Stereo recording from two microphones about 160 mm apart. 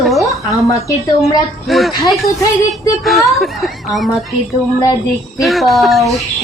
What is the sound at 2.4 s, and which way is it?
Speech, 20° left (ahead or behind).